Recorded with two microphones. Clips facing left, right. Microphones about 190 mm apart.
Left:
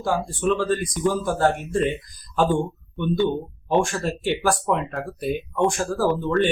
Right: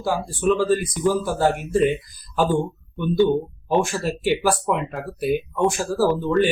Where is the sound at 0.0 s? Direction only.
5° right (ahead or behind).